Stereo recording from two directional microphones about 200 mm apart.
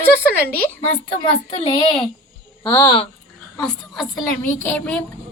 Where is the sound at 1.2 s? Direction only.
25° left (ahead or behind).